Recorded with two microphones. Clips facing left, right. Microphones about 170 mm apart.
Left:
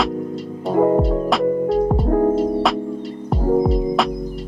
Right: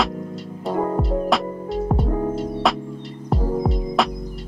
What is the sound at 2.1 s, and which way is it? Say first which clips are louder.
Music: left 7 dB; 50° left (ahead or behind).